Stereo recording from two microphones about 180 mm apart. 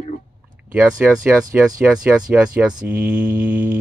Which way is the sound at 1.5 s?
5° right (ahead or behind).